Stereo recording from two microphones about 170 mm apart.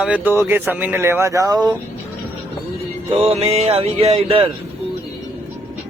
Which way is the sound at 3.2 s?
35° right (ahead or behind).